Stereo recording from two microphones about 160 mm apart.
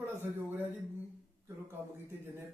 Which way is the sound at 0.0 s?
15° right (ahead or behind).